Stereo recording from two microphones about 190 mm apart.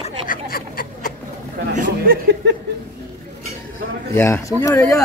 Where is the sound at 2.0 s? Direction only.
60° right (ahead or behind).